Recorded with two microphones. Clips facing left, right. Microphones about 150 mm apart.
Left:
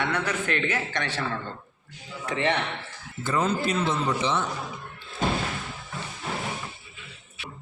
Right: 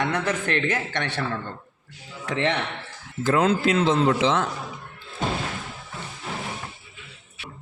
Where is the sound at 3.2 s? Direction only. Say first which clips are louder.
Right 5 dB; 90° right.